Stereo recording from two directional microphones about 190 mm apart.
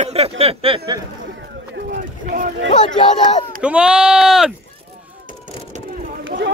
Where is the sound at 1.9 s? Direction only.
45° right (ahead or behind).